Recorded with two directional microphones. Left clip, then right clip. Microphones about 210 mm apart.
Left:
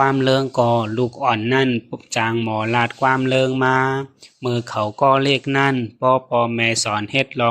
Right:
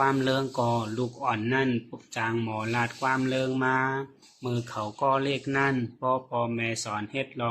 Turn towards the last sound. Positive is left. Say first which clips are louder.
# left 12 dB
turn(degrees=40)  # may be behind; listen again after turning